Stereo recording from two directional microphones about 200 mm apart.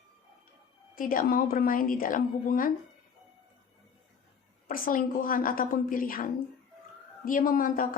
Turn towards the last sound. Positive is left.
turn(degrees=45)  # may be behind; listen again after turning